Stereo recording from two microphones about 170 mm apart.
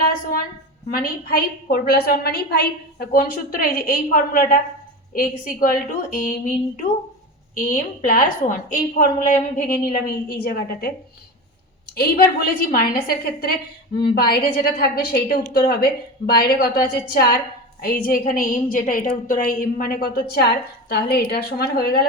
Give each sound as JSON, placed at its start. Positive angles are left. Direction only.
{"t": 0.9, "sound": "a woman's voice", "side_deg": 60}
{"t": 11.9, "sound": "a woman's voice", "side_deg": 60}